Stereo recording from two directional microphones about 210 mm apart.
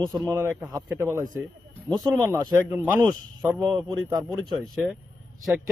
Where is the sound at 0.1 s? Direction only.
15° right (ahead or behind).